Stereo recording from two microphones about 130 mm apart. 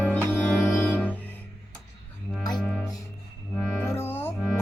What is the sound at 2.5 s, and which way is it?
Music, 5° left (ahead or behind).